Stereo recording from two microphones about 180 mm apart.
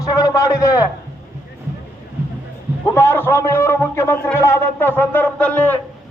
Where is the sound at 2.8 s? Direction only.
15° left (ahead or behind).